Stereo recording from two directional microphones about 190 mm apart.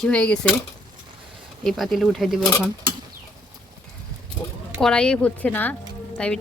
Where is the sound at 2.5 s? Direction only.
10° left (ahead or behind).